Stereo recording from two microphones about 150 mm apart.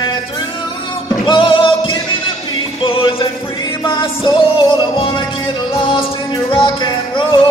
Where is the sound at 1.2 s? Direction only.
35° left (ahead or behind).